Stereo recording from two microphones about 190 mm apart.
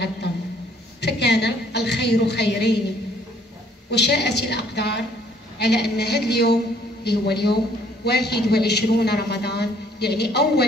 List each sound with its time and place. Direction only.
1.0 s a man's voice: 65° left (ahead or behind)
3.9 s a man's voice: 60° left (ahead or behind)